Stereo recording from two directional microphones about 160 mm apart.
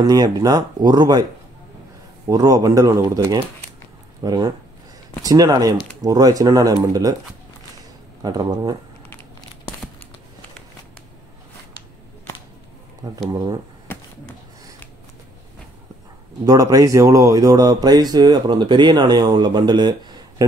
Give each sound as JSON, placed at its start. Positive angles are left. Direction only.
{"t": 0.0, "sound": "speech", "side_deg": -25}
{"t": 2.2, "sound": "speech", "side_deg": -20}
{"t": 8.2, "sound": "speech", "side_deg": -25}
{"t": 13.0, "sound": "speech", "side_deg": -25}
{"t": 16.4, "sound": "speech", "side_deg": -20}